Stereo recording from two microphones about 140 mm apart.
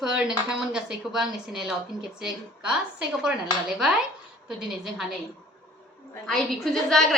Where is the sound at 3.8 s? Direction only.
5° right (ahead or behind).